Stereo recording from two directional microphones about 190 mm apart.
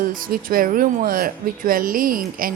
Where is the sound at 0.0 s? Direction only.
50° right (ahead or behind).